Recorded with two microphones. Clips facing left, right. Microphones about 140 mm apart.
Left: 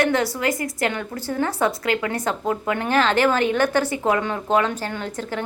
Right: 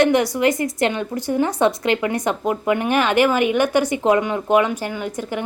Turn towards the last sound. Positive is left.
turn(degrees=-15)  # may be behind; listen again after turning